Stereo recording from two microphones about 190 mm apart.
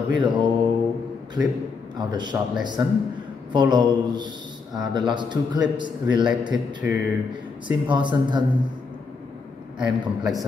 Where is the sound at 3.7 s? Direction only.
20° right (ahead or behind).